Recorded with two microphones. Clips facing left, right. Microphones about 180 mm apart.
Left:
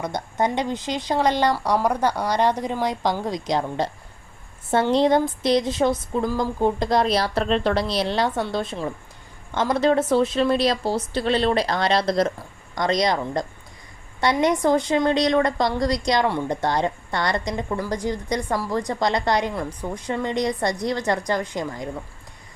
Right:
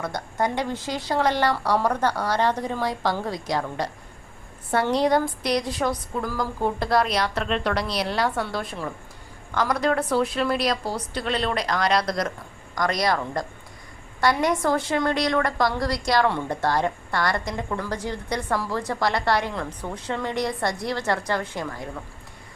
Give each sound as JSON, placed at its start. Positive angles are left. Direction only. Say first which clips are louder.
{"t": 0.0, "sound": "a woman's voice", "louder": "left 2 dB", "side_deg": 20}